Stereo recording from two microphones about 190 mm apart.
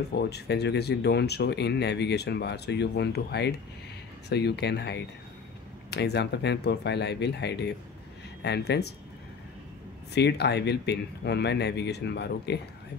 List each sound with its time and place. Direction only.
0.1 s speech: 60° left (ahead or behind)
10.1 s speech: 60° left (ahead or behind)